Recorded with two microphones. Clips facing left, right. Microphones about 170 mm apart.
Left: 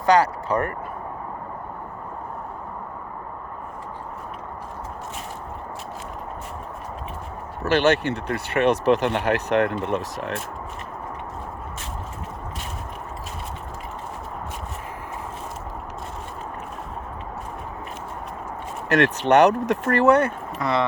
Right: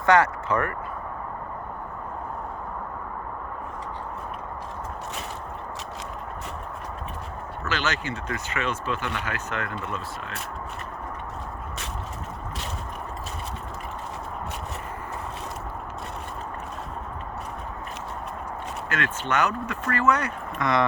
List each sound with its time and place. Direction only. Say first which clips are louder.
0.0 s speech: left 2 dB; 35° left (ahead or behind)
7.7 s speech: left 10 dB; 60° left (ahead or behind)
18.9 s speech: left 11 dB; 70° left (ahead or behind)
20.6 s speech: left 1 dB; 30° left (ahead or behind)